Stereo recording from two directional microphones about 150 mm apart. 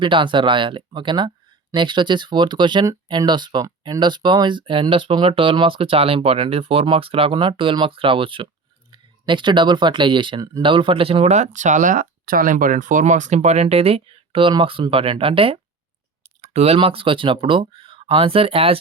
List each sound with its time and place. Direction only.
0.0 s speech: 35° right (ahead or behind)